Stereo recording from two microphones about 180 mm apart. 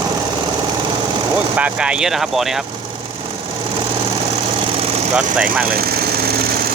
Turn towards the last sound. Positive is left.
turn(degrees=-5)  # may be behind; listen again after turning